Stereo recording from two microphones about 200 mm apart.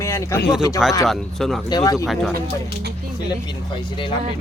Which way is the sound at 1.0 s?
Centre (ahead or behind).